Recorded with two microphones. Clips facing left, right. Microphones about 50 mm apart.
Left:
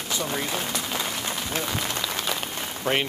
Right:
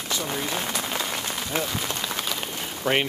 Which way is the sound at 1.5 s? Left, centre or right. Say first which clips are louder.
Right 4 dB; right.